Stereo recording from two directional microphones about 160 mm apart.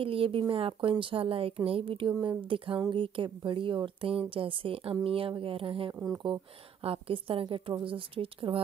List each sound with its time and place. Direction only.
0.0 s a woman's voice: 35° right (ahead or behind)
6.0 s speech: 25° right (ahead or behind)
6.8 s a woman's voice: 35° right (ahead or behind)